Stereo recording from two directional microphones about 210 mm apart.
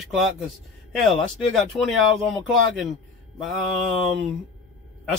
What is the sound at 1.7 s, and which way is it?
Speech, centre (ahead or behind).